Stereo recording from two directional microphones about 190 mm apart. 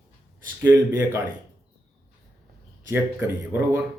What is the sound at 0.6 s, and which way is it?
Speech, 20° right (ahead or behind).